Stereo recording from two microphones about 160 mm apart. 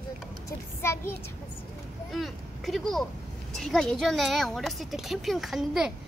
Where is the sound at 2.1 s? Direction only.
Centre (ahead or behind).